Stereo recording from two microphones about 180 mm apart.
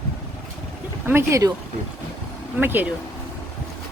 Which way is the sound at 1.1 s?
15° right (ahead or behind).